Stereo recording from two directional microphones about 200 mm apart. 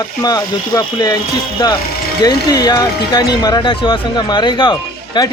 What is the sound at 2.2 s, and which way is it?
Speech, 20° left (ahead or behind).